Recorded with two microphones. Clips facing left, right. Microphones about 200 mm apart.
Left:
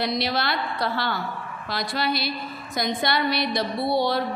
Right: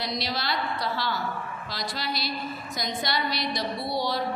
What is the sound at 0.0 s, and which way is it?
Speech, 60° left (ahead or behind).